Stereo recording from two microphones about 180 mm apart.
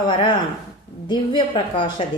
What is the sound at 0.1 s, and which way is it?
A woman's voice, 25° left (ahead or behind).